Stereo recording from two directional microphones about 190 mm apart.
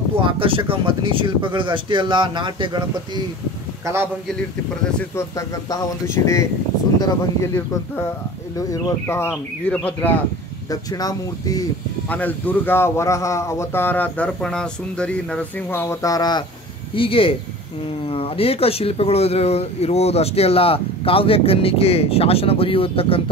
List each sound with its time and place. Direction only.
0.1 s speech: 30° right (ahead or behind)
3.8 s a man's voice: 15° right (ahead or behind)
5.1 s speech: 15° left (ahead or behind)
10.7 s speech: 20° left (ahead or behind)
12.1 s speech: 10° left (ahead or behind); by 23.3 s 30° left (ahead or behind)